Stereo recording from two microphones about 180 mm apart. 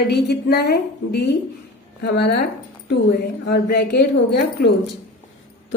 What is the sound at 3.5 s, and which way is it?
A woman's voice, 65° left (ahead or behind).